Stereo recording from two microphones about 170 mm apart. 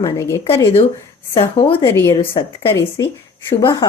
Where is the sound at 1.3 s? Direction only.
35° left (ahead or behind).